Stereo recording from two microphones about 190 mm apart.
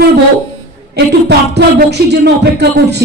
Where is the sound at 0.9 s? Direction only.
60° right (ahead or behind).